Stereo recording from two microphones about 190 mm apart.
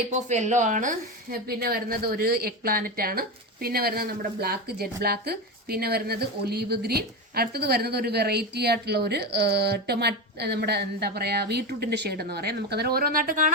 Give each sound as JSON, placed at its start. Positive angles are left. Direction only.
{"t": 0.1, "sound": "a woman's voice", "side_deg": -40}